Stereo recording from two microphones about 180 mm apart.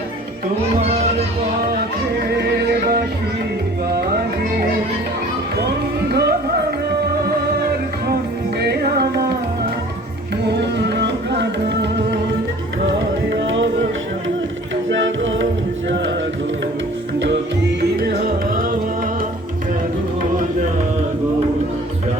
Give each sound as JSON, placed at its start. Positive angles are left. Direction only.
{"t": 0.8, "sound": "speech", "side_deg": -35}
{"t": 5.5, "sound": "run", "side_deg": -65}
{"t": 8.6, "sound": "music", "side_deg": -60}
{"t": 10.5, "sound": "music", "side_deg": -70}
{"t": 12.8, "sound": "music", "side_deg": -85}
{"t": 14.8, "sound": "music", "side_deg": -90}
{"t": 17.7, "sound": "music", "side_deg": -60}